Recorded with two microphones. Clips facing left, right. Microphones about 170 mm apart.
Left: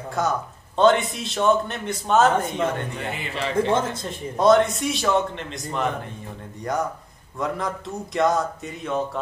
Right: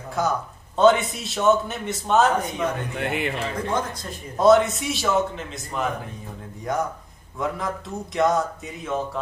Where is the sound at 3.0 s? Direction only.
65° right (ahead or behind).